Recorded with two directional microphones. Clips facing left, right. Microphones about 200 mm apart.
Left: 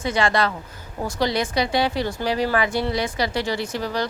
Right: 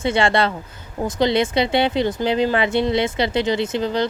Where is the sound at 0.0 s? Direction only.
25° right (ahead or behind).